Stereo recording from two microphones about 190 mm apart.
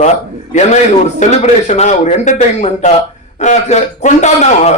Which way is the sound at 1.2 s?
35° left (ahead or behind).